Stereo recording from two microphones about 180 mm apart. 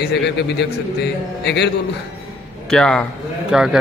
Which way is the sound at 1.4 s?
70° left (ahead or behind).